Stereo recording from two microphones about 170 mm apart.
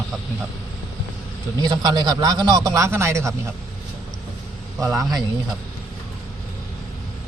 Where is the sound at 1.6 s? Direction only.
25° right (ahead or behind).